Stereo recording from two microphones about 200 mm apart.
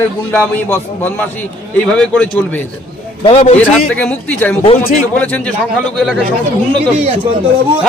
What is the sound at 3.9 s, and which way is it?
A man's voice, 10° left (ahead or behind).